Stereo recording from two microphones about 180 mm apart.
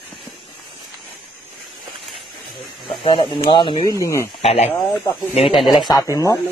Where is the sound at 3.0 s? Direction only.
35° left (ahead or behind); by 4.2 s 20° left (ahead or behind).